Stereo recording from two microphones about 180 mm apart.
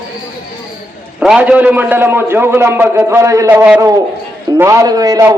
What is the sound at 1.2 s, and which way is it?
A man's voice, 5° right (ahead or behind).